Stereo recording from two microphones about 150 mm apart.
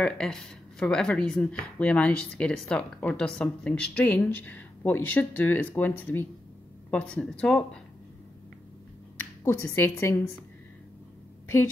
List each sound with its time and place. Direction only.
0.0 s speech: 5° left (ahead or behind)
9.4 s speech: 15° left (ahead or behind)